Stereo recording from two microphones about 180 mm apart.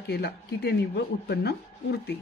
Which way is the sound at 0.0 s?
65° left (ahead or behind).